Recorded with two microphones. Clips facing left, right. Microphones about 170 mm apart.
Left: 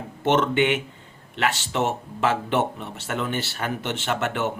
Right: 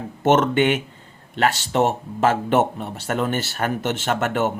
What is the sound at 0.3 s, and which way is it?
Speech, 45° right (ahead or behind).